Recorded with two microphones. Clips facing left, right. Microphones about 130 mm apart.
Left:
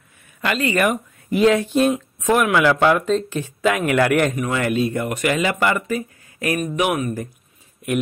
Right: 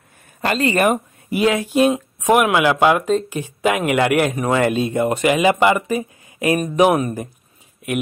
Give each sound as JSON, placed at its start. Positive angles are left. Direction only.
{"t": 0.4, "sound": "speech", "side_deg": -35}
{"t": 1.3, "sound": "speech", "side_deg": -10}
{"t": 4.4, "sound": "speech", "side_deg": -30}
{"t": 6.6, "sound": "speech", "side_deg": -35}